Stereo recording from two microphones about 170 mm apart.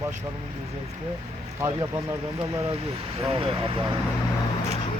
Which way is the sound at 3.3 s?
30° right (ahead or behind).